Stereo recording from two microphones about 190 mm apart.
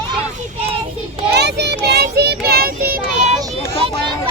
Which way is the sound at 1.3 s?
60° right (ahead or behind).